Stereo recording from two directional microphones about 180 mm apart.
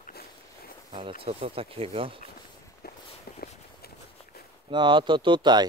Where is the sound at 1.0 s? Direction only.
30° right (ahead or behind).